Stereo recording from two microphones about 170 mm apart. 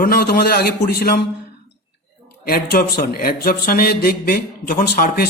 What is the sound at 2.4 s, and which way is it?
A man's voice, 60° left (ahead or behind).